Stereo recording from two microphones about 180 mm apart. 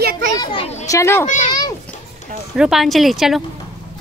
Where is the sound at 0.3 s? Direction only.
25° left (ahead or behind).